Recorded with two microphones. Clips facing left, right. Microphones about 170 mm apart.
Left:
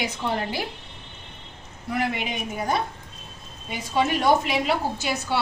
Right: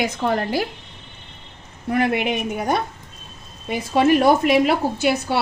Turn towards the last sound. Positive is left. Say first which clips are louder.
# right 6 dB
turn(degrees=-60)  # may be behind; listen again after turning